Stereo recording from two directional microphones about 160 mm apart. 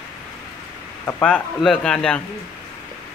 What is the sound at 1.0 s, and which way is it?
A man's voice, 5° left (ahead or behind).